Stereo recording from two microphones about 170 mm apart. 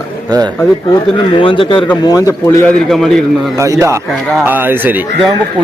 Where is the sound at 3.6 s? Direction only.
20° right (ahead or behind).